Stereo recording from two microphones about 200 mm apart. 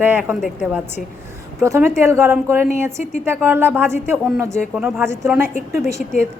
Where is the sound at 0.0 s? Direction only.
10° right (ahead or behind).